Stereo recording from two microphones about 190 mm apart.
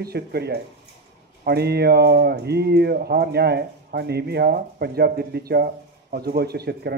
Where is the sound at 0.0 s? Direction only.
55° right (ahead or behind).